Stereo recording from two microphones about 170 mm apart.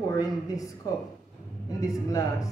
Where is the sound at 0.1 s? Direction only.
20° left (ahead or behind).